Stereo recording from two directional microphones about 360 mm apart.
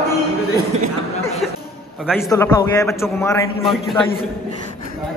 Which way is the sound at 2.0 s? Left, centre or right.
Centre.